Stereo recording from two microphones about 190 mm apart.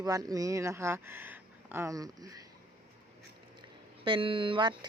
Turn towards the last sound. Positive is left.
turn(degrees=-25)  # may be behind; listen again after turning